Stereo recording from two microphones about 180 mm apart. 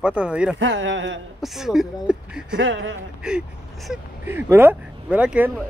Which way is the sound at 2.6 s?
90° right.